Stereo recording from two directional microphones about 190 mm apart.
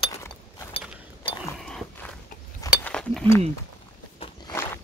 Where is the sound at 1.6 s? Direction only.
Centre (ahead or behind).